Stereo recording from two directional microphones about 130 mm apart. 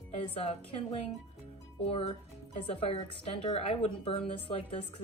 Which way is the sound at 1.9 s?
45° left (ahead or behind).